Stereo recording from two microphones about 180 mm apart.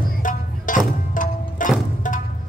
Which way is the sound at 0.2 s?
45° left (ahead or behind).